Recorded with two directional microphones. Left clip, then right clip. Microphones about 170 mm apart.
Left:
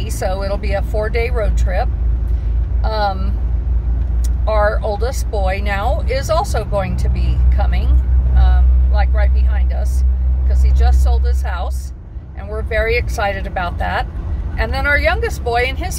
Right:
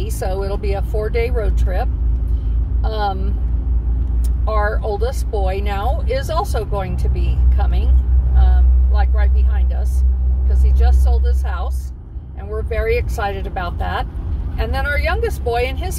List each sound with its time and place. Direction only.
0.0 s speech: 5° left (ahead or behind)
4.5 s speech: 5° left (ahead or behind)
8.4 s vehicle: 10° left (ahead or behind)
10.5 s speech: 10° left (ahead or behind)